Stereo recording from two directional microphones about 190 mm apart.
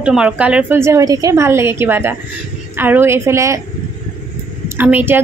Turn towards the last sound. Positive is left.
turn(degrees=-10)  # may be behind; listen again after turning